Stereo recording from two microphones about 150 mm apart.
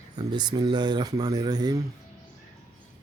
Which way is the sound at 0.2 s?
30° right (ahead or behind).